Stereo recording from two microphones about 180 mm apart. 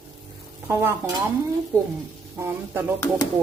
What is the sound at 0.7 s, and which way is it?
Speech, 15° right (ahead or behind).